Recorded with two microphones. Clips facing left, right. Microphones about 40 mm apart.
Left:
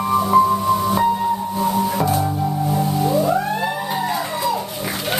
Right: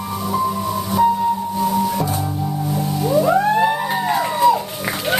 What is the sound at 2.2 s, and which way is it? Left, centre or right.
Music, centre.